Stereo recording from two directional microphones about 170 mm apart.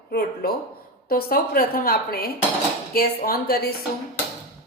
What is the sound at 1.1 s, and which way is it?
A woman's voice, 65° left (ahead or behind).